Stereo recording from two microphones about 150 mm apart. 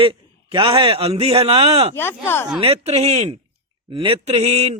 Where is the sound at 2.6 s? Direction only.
40° right (ahead or behind).